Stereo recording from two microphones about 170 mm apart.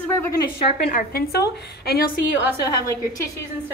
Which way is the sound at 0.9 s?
60° left (ahead or behind).